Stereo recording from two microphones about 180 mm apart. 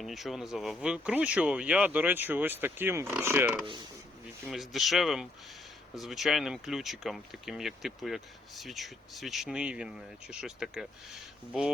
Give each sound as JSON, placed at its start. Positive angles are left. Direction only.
{"t": 0.0, "sound": "speech", "side_deg": 0}